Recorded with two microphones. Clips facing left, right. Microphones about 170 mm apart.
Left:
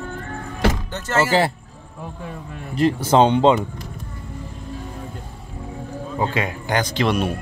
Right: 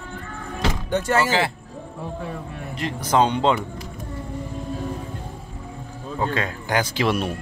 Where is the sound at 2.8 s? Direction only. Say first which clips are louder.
Left 5 dB; 30° left (ahead or behind).